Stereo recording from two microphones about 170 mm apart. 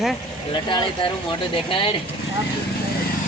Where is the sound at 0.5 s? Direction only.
25° left (ahead or behind).